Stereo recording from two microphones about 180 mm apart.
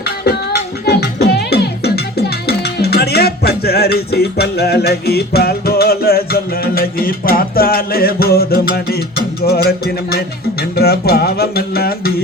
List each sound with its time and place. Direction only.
0.0 s music: 60° left (ahead or behind)